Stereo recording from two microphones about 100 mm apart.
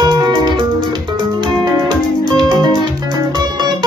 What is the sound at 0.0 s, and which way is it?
Music, 45° right (ahead or behind).